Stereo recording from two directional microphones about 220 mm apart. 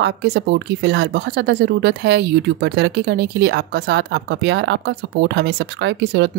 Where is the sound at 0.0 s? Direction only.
50° right (ahead or behind).